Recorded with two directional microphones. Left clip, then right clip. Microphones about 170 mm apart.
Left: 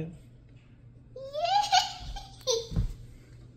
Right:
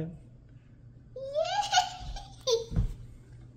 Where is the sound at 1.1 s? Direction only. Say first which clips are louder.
Left 3 dB; 30° left (ahead or behind).